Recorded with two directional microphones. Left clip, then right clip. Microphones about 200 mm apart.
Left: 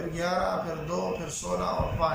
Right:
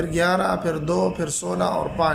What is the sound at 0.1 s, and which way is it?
Speech, 50° right (ahead or behind).